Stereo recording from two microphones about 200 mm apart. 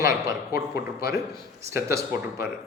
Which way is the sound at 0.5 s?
50° left (ahead or behind).